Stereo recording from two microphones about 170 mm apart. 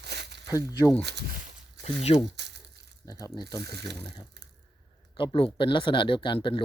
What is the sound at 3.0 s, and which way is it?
Speech, 20° left (ahead or behind).